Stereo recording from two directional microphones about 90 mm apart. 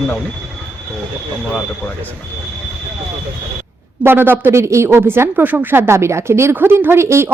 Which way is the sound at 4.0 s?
25° right (ahead or behind).